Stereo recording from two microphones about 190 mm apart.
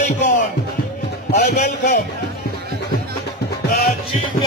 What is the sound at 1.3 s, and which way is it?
Speech, 55° left (ahead or behind).